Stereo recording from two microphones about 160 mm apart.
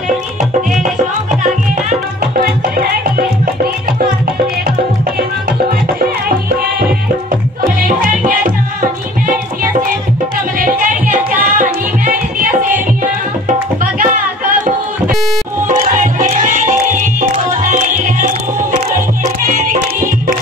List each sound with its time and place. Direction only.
1.3 s music: 50° right (ahead or behind)
8.0 s music: 60° right (ahead or behind)
10.6 s music: 60° right (ahead or behind)
15.6 s music: 55° right (ahead or behind)